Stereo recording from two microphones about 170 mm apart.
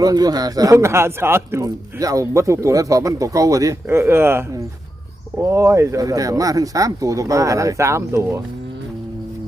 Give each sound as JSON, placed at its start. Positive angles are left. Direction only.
{"t": 0.0, "sound": "a man's voice", "side_deg": -20}